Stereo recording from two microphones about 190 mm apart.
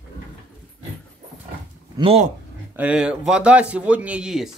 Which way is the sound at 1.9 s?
30° right (ahead or behind).